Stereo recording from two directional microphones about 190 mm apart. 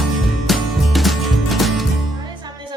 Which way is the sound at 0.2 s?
Centre (ahead or behind).